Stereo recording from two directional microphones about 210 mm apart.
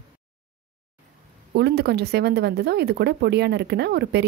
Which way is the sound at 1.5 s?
50° right (ahead or behind).